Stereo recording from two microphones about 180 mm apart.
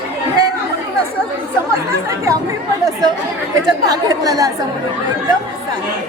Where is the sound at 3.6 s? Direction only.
20° right (ahead or behind).